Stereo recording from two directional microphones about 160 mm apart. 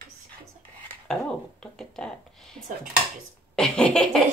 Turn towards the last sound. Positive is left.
turn(degrees=5)  # may be behind; listen again after turning